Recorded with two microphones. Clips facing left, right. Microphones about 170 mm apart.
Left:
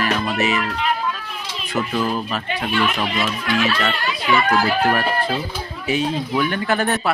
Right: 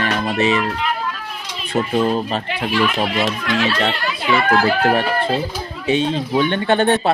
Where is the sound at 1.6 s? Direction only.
30° right (ahead or behind).